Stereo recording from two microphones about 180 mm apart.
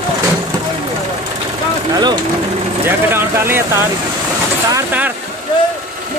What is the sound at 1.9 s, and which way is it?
Speech, 25° right (ahead or behind).